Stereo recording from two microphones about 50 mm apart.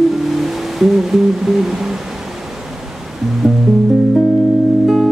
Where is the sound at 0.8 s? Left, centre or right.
Centre.